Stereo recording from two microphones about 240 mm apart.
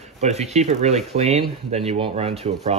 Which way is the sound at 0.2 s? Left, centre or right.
Right.